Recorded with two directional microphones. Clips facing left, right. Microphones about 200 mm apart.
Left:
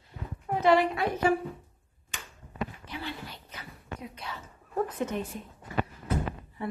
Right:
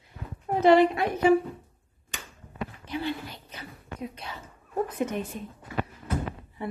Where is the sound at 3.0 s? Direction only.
20° right (ahead or behind).